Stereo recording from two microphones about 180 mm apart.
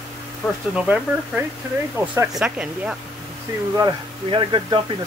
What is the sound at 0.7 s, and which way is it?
Speech, 5° right (ahead or behind).